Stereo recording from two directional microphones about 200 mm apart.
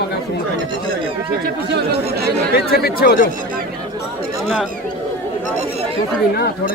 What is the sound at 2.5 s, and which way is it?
Speech, 50° left (ahead or behind).